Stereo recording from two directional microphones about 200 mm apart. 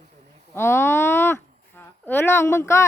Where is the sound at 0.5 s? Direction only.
10° left (ahead or behind).